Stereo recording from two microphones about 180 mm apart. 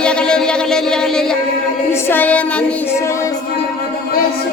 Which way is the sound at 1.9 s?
10° left (ahead or behind).